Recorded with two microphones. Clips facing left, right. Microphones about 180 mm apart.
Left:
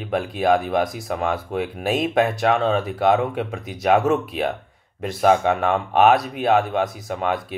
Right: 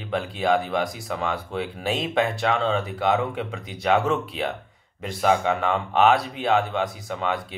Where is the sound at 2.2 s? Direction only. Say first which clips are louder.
Left 3 dB; 20° left (ahead or behind).